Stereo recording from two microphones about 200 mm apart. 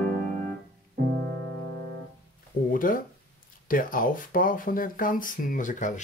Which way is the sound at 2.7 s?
45° left (ahead or behind).